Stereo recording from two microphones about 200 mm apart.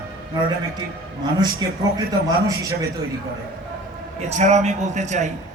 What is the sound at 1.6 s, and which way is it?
A man's voice, 20° right (ahead or behind).